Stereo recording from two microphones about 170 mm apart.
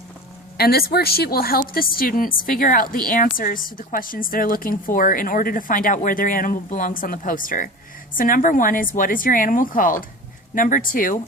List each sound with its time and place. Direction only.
0.5 s a woman's voice: 65° left (ahead or behind)